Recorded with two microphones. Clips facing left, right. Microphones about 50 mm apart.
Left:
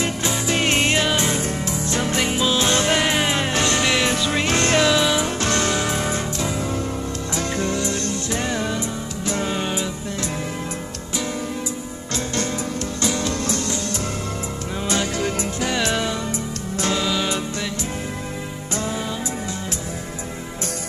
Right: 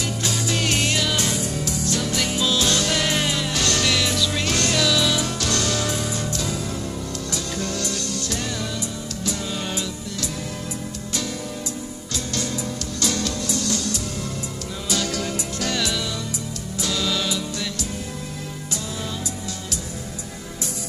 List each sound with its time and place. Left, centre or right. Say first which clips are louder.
0.0 s music: left 3 dB; left
9.7 s music: left 3 dB; left
13.0 s music: left 2 dB; left
14.9 s music: left 2 dB; left
16.9 s music: left 1 dB; left